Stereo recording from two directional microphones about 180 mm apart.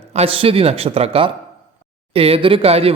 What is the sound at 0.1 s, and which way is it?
A man's voice, 35° right (ahead or behind).